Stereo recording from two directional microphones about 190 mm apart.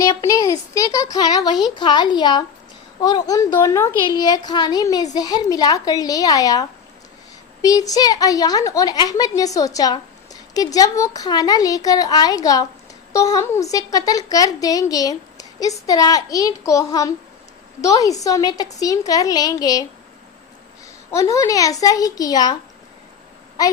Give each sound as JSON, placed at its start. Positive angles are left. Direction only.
{"t": 0.0, "sound": "a sound", "side_deg": 15}
{"t": 1.1, "sound": "a woman's voice", "side_deg": 20}
{"t": 21.1, "sound": "a woman's voice", "side_deg": 15}